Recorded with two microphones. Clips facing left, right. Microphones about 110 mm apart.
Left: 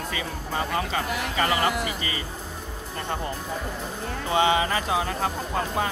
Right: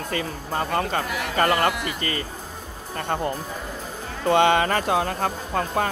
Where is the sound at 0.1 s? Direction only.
45° right (ahead or behind).